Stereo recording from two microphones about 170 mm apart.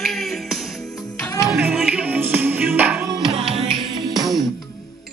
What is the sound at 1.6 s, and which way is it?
Music, centre (ahead or behind).